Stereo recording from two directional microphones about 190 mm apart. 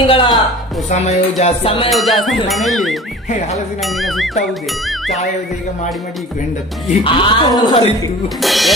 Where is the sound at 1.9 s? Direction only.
Centre (ahead or behind).